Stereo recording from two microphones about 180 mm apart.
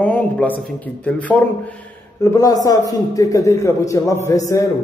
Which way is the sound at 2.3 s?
20° left (ahead or behind).